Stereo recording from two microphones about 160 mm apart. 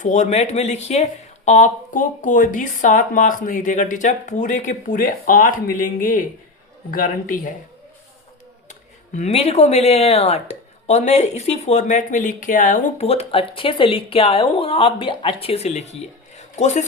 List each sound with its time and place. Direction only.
0.0 s speech: 45° left (ahead or behind)
9.1 s speech: 40° left (ahead or behind)